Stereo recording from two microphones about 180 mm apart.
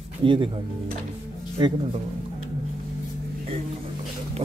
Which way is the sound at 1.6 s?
25° right (ahead or behind).